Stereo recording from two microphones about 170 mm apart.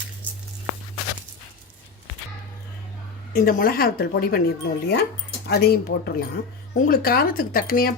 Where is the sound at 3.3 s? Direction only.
60° left (ahead or behind).